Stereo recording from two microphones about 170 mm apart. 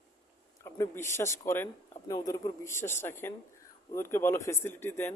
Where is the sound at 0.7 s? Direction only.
15° left (ahead or behind).